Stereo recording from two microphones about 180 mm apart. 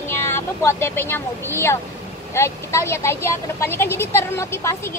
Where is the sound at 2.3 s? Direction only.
15° left (ahead or behind).